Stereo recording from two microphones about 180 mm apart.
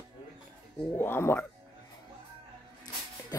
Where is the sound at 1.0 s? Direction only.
10° left (ahead or behind).